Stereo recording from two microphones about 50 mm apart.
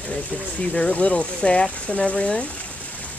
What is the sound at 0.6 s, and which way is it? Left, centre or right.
Speech, left.